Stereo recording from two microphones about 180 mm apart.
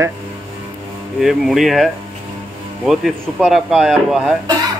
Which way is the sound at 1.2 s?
Centre (ahead or behind).